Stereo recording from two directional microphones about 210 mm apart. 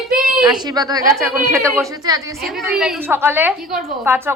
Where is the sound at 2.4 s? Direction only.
5° right (ahead or behind).